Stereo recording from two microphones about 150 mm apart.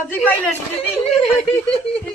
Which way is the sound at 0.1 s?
10° left (ahead or behind).